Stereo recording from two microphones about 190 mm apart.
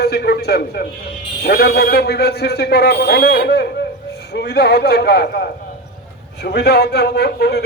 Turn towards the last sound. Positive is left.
turn(degrees=60)  # may be behind; listen again after turning